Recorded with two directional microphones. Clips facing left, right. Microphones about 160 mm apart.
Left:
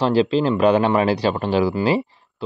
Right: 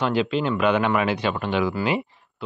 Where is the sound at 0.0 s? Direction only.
35° left (ahead or behind).